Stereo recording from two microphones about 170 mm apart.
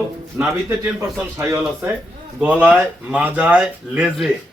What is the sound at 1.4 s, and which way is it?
Speech, 15° right (ahead or behind).